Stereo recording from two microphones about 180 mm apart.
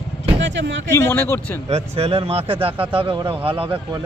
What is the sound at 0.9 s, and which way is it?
Speech, 15° left (ahead or behind).